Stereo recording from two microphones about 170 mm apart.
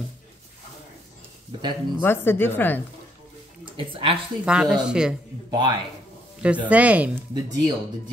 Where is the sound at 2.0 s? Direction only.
10° left (ahead or behind).